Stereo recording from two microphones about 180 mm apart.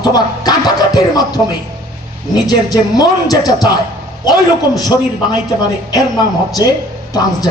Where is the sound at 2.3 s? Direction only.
20° left (ahead or behind).